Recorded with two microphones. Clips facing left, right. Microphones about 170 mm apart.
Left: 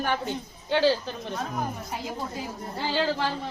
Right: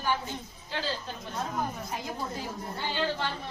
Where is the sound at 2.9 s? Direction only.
90° left.